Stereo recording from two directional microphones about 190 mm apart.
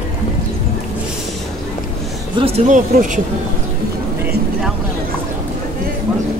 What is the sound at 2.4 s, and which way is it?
Speech, 30° right (ahead or behind).